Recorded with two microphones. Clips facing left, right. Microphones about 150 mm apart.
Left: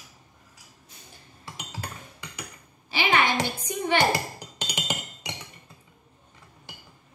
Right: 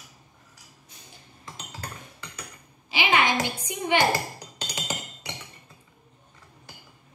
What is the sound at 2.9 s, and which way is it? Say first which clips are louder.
Speech: even; 15° right (ahead or behind).